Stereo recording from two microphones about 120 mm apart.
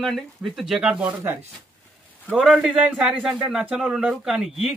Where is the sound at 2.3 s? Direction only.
5° right (ahead or behind).